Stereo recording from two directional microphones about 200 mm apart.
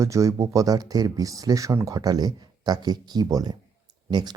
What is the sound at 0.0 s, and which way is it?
Speech, 15° right (ahead or behind).